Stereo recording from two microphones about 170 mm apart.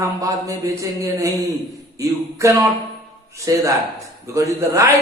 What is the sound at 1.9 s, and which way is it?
A man's voice, 20° right (ahead or behind).